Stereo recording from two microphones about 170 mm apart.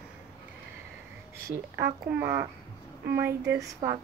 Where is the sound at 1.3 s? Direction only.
15° right (ahead or behind).